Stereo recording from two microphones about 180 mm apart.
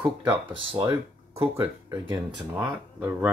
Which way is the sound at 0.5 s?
25° right (ahead or behind).